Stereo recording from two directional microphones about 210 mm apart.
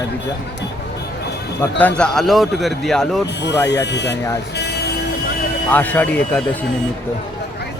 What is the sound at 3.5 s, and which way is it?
Speech, 55° left (ahead or behind).